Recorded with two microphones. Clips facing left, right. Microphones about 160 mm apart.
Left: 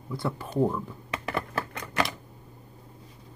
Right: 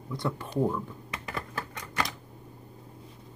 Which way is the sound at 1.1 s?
70° left (ahead or behind).